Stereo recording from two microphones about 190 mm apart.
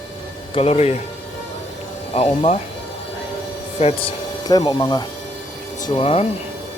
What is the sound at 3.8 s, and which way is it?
Speech, 30° left (ahead or behind).